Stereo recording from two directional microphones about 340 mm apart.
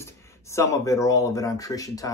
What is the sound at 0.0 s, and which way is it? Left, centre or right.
Speech, centre.